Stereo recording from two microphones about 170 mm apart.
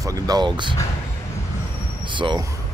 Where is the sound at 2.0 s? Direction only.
30° right (ahead or behind).